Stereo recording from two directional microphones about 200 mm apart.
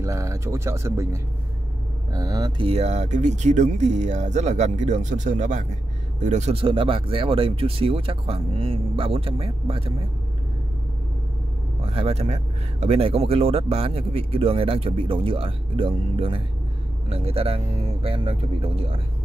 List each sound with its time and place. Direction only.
0.0 s speech: 15° right (ahead or behind)
11.8 s speech: 25° right (ahead or behind)